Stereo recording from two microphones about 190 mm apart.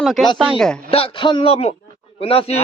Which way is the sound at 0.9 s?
30° left (ahead or behind).